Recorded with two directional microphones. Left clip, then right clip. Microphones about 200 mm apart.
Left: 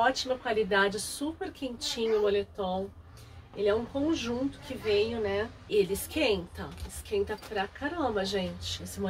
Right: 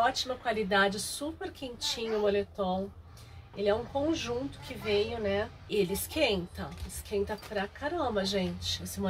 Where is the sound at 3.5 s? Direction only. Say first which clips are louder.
Left 1 dB; centre (ahead or behind).